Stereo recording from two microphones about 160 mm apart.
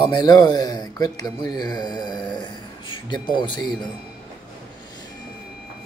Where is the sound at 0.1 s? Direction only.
25° left (ahead or behind).